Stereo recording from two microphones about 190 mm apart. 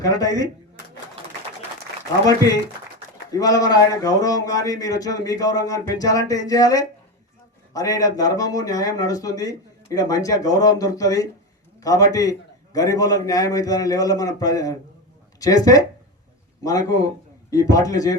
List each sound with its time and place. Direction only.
0.0 s speech: 20° left (ahead or behind)
3.3 s a man's voice: 20° left (ahead or behind)